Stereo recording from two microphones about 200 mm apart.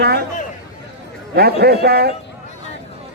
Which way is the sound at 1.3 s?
50° right (ahead or behind).